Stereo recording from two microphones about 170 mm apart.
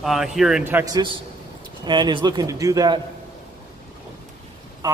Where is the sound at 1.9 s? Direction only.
25° right (ahead or behind).